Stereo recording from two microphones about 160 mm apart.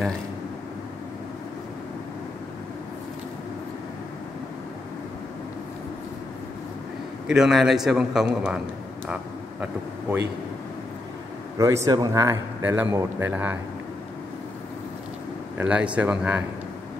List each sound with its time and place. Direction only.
7.2 s a man's voice: 5° right (ahead or behind)
11.5 s a man's voice: 20° right (ahead or behind)
15.5 s speech: 10° right (ahead or behind)